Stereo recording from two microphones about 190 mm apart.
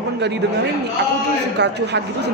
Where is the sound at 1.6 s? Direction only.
65° right (ahead or behind).